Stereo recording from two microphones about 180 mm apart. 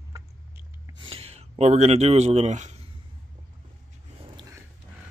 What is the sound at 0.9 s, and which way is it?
Speech, 30° right (ahead or behind).